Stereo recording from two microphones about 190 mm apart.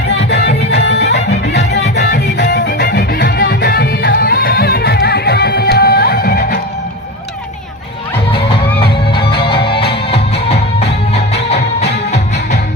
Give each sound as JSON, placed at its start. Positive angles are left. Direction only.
{"t": 0.3, "sound": "music", "side_deg": 60}
{"t": 9.5, "sound": "music", "side_deg": 55}
{"t": 9.9, "sound": "music", "side_deg": 30}